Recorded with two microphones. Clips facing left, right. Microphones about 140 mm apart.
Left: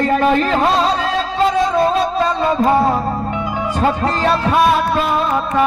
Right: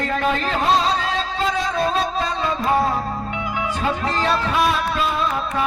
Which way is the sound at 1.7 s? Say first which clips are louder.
Left 6 dB; 45° left (ahead or behind).